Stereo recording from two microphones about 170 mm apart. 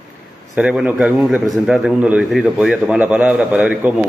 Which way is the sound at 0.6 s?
5° right (ahead or behind).